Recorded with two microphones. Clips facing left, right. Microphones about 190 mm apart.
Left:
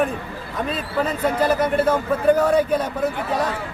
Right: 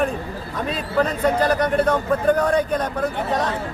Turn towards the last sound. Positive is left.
turn(degrees=5)  # may be behind; listen again after turning